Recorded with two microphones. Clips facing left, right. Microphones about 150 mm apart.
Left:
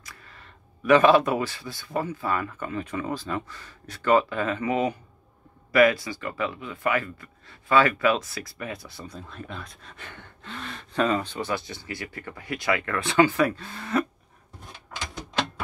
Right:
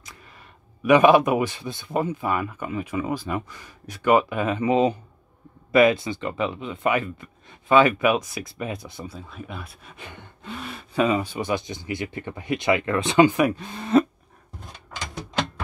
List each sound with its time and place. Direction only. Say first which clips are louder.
0.8 s speech: right 2 dB; 15° right (ahead or behind)
9.0 s speech: right 2 dB; 5° right (ahead or behind)